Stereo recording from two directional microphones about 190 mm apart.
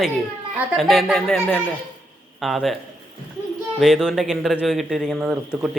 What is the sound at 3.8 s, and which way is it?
Speech, 5° right (ahead or behind).